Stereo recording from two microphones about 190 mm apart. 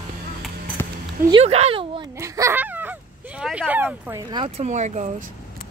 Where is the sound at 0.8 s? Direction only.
10° left (ahead or behind).